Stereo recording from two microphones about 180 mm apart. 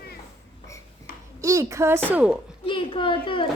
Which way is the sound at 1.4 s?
15° right (ahead or behind).